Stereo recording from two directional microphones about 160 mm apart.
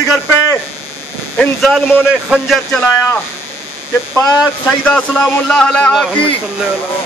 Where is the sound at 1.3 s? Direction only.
5° left (ahead or behind).